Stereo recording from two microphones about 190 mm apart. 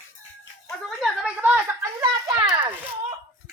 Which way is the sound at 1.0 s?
5° right (ahead or behind).